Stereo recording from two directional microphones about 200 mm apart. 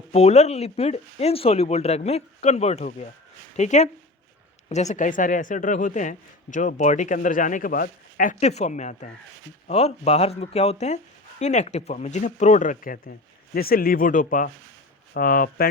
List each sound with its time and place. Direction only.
0.1 s speech: 35° left (ahead or behind)